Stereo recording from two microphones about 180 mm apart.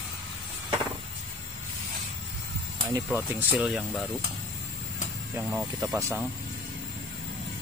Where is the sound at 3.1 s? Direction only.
5° right (ahead or behind).